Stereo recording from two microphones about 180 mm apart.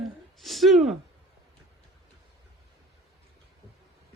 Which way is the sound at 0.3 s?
Centre (ahead or behind).